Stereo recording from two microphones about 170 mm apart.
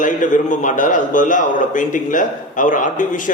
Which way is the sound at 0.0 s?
50° left (ahead or behind).